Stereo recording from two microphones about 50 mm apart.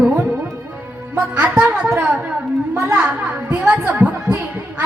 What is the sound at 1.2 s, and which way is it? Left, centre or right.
Speech, right.